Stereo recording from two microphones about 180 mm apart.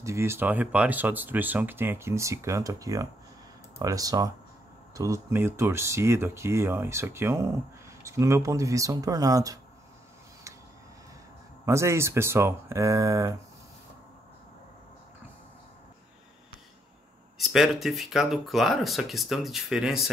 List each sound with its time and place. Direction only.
0.0 s speech: 15° right (ahead or behind)
11.6 s speech: 15° right (ahead or behind)
17.4 s speech: centre (ahead or behind)